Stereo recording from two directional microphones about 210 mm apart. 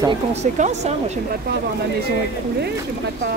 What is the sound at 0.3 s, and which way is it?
Speech, 30° right (ahead or behind).